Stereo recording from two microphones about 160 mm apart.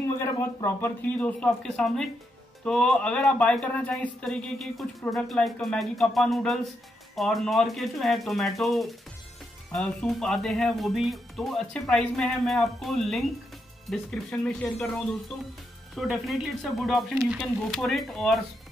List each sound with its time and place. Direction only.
0.2 s speech: 15° left (ahead or behind); by 18.4 s centre (ahead or behind)